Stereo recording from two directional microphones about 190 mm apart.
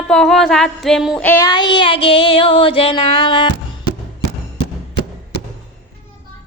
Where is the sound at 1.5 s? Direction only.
25° left (ahead or behind).